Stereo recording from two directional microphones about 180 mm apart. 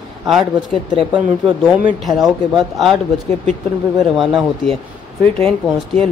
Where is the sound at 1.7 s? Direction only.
5° right (ahead or behind).